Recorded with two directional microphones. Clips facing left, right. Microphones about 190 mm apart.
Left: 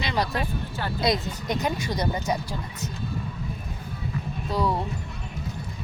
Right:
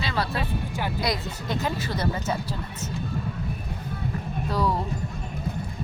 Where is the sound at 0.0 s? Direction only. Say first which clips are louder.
Left 1 dB; 15° left (ahead or behind).